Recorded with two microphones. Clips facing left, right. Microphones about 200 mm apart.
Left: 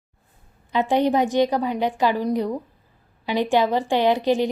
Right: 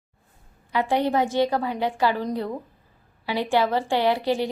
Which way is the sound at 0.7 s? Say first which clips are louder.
Left 3 dB; 20° left (ahead or behind).